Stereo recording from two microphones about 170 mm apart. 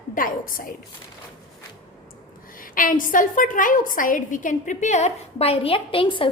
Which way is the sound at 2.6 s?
55° left (ahead or behind).